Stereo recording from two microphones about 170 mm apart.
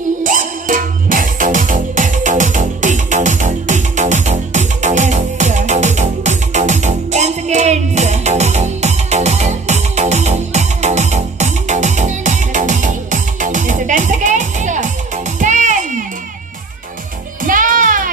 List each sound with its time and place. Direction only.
0.2 s music: 50° right (ahead or behind)
17.4 s music: 50° right (ahead or behind)